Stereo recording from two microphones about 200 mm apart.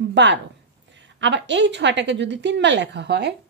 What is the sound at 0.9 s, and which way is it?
A woman's voice, 65° right (ahead or behind).